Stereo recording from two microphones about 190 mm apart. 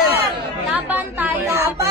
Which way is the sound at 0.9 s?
10° right (ahead or behind).